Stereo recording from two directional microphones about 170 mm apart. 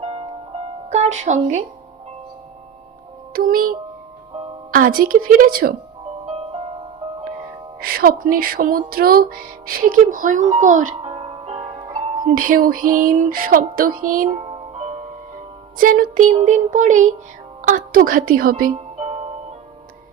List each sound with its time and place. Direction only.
0.0 s music: 35° right (ahead or behind)
0.9 s speech: 40° right (ahead or behind)
3.3 s music: 55° right (ahead or behind)
6.2 s music: 35° right (ahead or behind)
7.8 s music: 60° right (ahead or behind); by 12.2 s 25° right (ahead or behind)
12.2 s music: 55° right (ahead or behind)
14.0 s speech: 55° right (ahead or behind)
14.3 s music: 30° right (ahead or behind)
15.8 s speech: 55° right (ahead or behind)
17.6 s music: 50° right (ahead or behind)
18.9 s music: 40° right (ahead or behind)